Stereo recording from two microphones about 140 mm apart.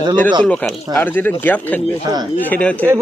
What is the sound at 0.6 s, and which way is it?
Speech, 15° left (ahead or behind).